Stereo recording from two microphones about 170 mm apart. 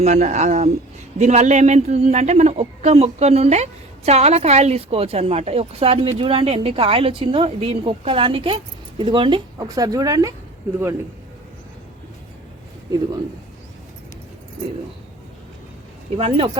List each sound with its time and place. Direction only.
0.0 s a man's voice: 40° right (ahead or behind); by 10.3 s 20° right (ahead or behind)
16.1 s a man's voice: 30° right (ahead or behind)